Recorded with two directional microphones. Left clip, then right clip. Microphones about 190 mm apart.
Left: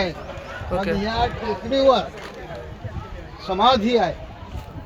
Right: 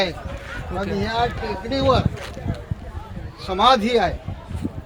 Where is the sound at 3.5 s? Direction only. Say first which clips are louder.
Even; 40° right (ahead or behind).